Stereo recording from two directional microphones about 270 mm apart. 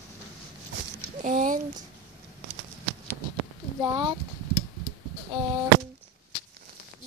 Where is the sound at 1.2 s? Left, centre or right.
Right.